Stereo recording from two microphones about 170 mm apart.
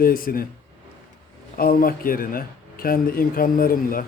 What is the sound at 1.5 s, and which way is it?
Speech, 60° left (ahead or behind).